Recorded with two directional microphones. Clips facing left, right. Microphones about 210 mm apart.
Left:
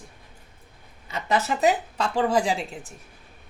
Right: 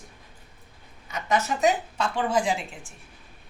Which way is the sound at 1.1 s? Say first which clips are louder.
Left 1 dB; 35° left (ahead or behind).